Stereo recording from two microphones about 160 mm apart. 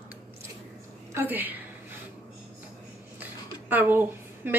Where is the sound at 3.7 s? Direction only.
10° right (ahead or behind).